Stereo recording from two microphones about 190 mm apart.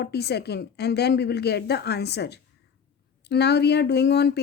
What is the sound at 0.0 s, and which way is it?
Speech, 60° left (ahead or behind).